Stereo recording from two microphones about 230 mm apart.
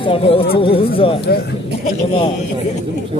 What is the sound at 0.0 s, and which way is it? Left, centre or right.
Speech, left.